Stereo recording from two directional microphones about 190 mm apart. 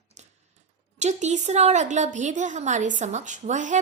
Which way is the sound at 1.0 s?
40° right (ahead or behind).